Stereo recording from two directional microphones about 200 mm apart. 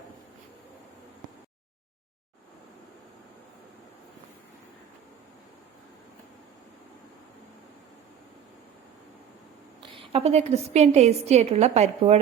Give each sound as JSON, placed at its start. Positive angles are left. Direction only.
{"t": 9.8, "sound": "a woman's voice", "side_deg": -25}